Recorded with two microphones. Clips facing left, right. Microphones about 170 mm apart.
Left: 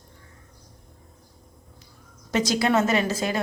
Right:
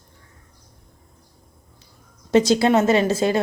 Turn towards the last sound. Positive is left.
turn(degrees=-30)  # may be behind; listen again after turning